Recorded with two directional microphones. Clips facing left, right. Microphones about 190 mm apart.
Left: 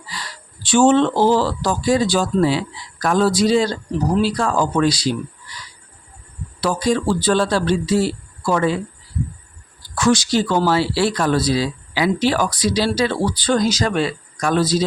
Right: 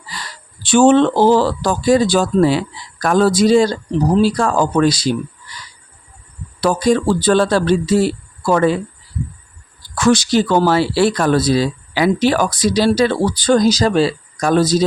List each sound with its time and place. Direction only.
0.6 s speech: 55° right (ahead or behind)
6.6 s speech: 50° right (ahead or behind)
10.0 s speech: 55° right (ahead or behind)